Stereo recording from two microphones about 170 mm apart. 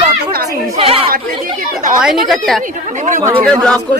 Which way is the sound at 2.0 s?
Centre (ahead or behind).